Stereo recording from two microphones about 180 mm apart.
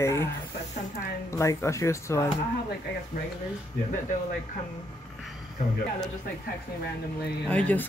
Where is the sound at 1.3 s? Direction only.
15° left (ahead or behind).